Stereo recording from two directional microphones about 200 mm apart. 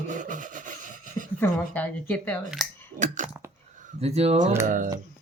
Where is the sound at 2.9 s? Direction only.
40° right (ahead or behind).